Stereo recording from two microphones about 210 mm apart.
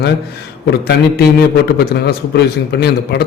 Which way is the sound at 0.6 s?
50° left (ahead or behind).